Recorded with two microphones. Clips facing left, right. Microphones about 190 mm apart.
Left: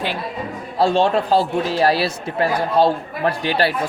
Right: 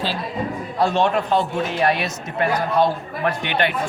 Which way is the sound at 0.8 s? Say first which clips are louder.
Left 3 dB; 30° left (ahead or behind).